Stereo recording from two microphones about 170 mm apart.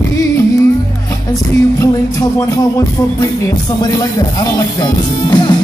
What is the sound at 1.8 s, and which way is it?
Music, 20° left (ahead or behind).